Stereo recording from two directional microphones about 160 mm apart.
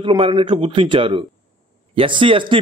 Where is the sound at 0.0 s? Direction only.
35° right (ahead or behind).